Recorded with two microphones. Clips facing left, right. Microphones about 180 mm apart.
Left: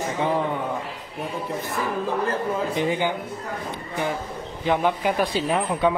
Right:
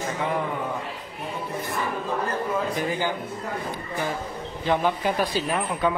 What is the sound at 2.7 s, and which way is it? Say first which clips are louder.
Speech: left 3 dB; 25° left (ahead or behind).